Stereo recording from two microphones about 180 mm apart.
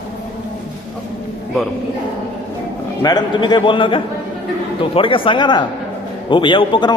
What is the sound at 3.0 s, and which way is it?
A man's voice, 25° left (ahead or behind).